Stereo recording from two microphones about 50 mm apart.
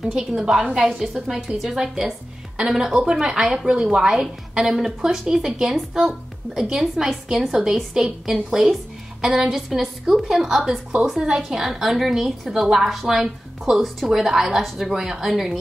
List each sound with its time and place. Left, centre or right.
0.1 s a woman's voice: centre